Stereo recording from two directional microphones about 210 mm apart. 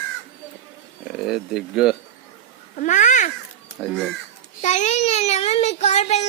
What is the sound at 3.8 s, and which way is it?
Speech, centre (ahead or behind).